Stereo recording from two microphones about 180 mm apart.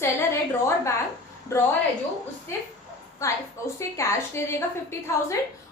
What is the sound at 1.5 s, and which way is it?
Speech, 15° left (ahead or behind).